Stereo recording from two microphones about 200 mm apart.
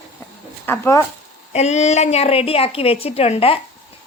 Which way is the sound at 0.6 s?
10° left (ahead or behind).